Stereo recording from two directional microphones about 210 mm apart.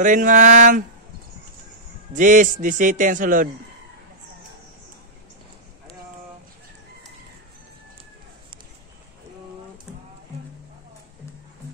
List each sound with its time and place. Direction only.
0.0 s speech: 40° right (ahead or behind)
2.1 s speech: 40° right (ahead or behind)
9.9 s rain: 5° right (ahead or behind)